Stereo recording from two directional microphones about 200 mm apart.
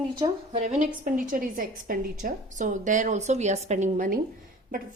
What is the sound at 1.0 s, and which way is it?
A woman's voice, 45° right (ahead or behind).